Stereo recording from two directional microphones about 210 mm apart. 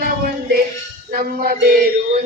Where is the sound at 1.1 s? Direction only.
45° right (ahead or behind).